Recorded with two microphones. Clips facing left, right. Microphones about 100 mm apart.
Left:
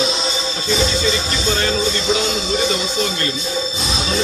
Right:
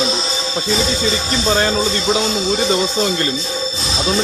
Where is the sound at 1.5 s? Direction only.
35° right (ahead or behind).